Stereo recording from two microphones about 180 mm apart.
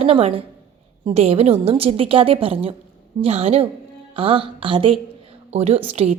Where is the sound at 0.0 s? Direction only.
30° right (ahead or behind).